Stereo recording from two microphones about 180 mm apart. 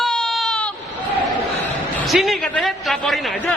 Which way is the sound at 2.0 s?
Centre (ahead or behind).